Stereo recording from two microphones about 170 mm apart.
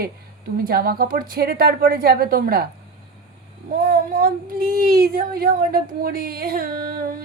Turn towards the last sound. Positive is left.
turn(degrees=-60)  # may be behind; listen again after turning